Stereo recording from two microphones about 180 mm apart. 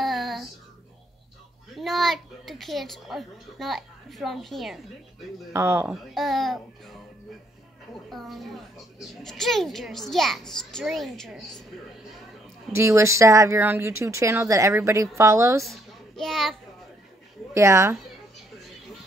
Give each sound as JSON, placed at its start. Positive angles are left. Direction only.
{"t": 0.0, "sound": "a sound", "side_deg": 0}
{"t": 1.8, "sound": "a woman's voice", "side_deg": 0}
{"t": 5.5, "sound": "speech", "side_deg": -15}
{"t": 6.1, "sound": "a child's voice", "side_deg": 0}
{"t": 12.7, "sound": "speech", "side_deg": -15}
{"t": 15.6, "sound": "child singing", "side_deg": 0}
{"t": 17.6, "sound": "speech", "side_deg": -15}